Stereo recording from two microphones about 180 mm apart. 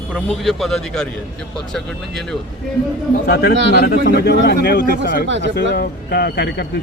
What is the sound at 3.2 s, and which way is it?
Speech, 55° left (ahead or behind).